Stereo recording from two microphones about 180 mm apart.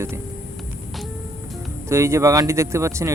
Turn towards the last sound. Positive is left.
turn(degrees=-15)  # may be behind; listen again after turning